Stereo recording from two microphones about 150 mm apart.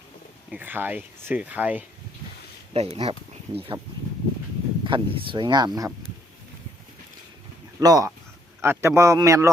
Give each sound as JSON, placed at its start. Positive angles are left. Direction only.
{"t": 0.5, "sound": "speech", "side_deg": -10}
{"t": 2.7, "sound": "speech", "side_deg": -40}
{"t": 4.8, "sound": "speech", "side_deg": -30}
{"t": 7.8, "sound": "speech", "side_deg": -25}